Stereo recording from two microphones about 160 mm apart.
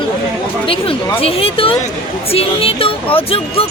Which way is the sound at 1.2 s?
35° left (ahead or behind).